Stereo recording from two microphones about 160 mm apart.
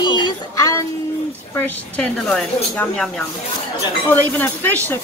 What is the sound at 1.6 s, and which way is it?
A woman's voice, 10° left (ahead or behind).